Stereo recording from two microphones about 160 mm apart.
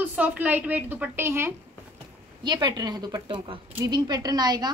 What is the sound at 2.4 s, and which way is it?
A woman's voice, 25° right (ahead or behind).